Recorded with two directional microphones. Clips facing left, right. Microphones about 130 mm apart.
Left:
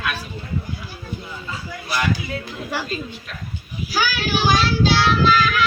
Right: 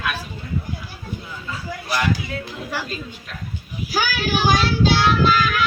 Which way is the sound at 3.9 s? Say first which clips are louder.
Even; 50° right (ahead or behind).